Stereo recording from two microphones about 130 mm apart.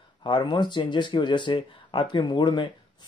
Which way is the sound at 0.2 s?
35° left (ahead or behind).